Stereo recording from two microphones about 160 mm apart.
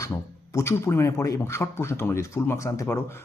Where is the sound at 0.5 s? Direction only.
15° left (ahead or behind).